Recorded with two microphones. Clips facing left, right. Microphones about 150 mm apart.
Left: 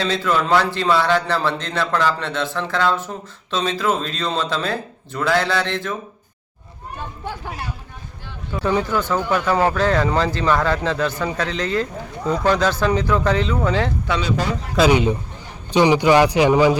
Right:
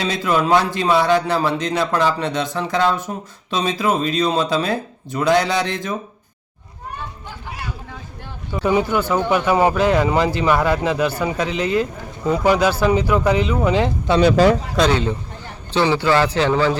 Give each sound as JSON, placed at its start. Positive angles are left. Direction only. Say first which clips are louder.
{"t": 0.0, "sound": "speech", "louder": "right 1 dB", "side_deg": -15}
{"t": 8.5, "sound": "speech", "louder": "right 2 dB", "side_deg": -10}
{"t": 14.2, "sound": "speech", "louder": "right 13 dB", "side_deg": -80}
{"t": 14.8, "sound": "speech", "louder": "left 2 dB", "side_deg": 15}